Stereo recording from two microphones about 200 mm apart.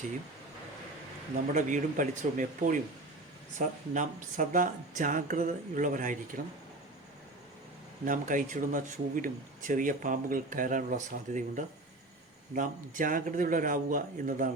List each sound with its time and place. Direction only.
1.5 s speech: 40° right (ahead or behind)
8.0 s speech: 40° right (ahead or behind)